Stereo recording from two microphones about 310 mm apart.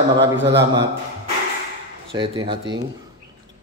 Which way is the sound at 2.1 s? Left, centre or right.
Centre.